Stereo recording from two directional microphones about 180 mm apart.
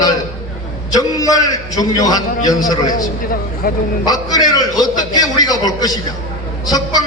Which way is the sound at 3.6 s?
55° left (ahead or behind).